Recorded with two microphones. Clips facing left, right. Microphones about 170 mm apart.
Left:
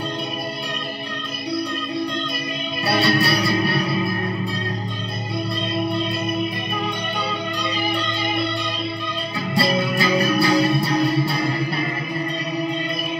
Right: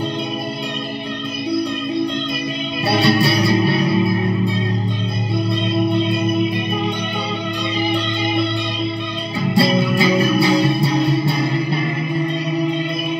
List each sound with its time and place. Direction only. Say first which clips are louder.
3.0 s music: right 4 dB; 25° right (ahead or behind)
9.6 s music: right 4 dB; 25° right (ahead or behind)